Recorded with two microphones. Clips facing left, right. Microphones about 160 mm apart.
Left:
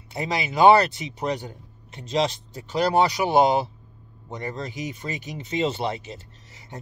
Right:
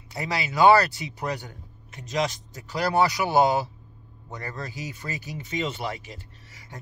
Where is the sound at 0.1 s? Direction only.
20° left (ahead or behind).